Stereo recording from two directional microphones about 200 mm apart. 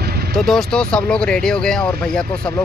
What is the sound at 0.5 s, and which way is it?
Speech, 5° left (ahead or behind).